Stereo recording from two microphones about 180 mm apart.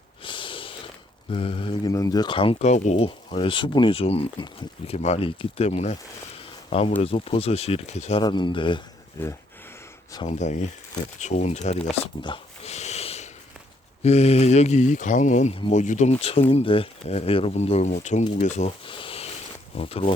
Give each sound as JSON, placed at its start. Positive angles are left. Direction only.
{"t": 0.2, "sound": "snort", "side_deg": 30}
{"t": 1.3, "sound": "speech", "side_deg": 30}
{"t": 8.2, "sound": "speech", "side_deg": 25}
{"t": 10.2, "sound": "speech", "side_deg": 40}
{"t": 12.2, "sound": "a sound", "side_deg": 30}
{"t": 14.0, "sound": "speech", "side_deg": 35}
{"t": 18.9, "sound": "a sound", "side_deg": 30}
{"t": 19.7, "sound": "speech", "side_deg": 30}